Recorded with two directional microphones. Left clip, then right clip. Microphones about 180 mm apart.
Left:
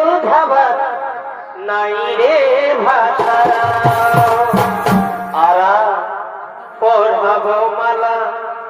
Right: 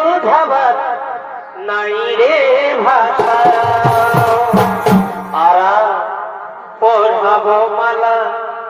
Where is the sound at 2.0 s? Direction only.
25° left (ahead or behind).